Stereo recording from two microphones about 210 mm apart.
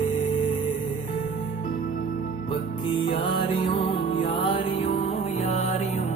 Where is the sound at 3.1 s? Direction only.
25° left (ahead or behind).